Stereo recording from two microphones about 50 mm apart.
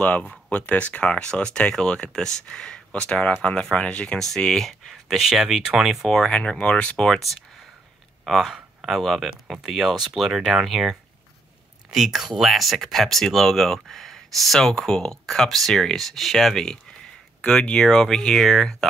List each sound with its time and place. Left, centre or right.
0.0 s speech: left
4.2 s speech: centre
5.0 s speech: centre
6.0 s speech: centre
6.6 s speech: left
8.3 s speech: centre
11.9 s speech: centre